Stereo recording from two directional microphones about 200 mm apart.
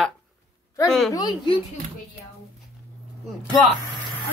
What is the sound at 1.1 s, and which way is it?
Speech, 20° left (ahead or behind).